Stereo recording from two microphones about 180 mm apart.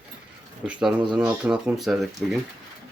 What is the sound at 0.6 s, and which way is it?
Speech, 5° right (ahead or behind).